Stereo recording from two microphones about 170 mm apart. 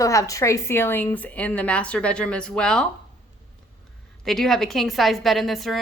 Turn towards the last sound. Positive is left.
turn(degrees=0)  # may be behind; listen again after turning